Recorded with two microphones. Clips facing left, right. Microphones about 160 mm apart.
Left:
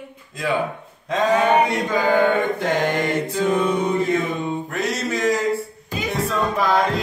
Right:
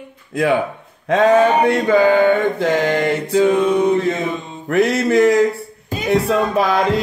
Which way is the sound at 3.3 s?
60° right (ahead or behind).